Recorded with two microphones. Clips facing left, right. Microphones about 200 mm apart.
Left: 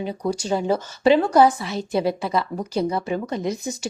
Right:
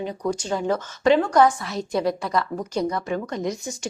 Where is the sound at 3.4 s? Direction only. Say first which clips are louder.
Left 2 dB; 30° left (ahead or behind).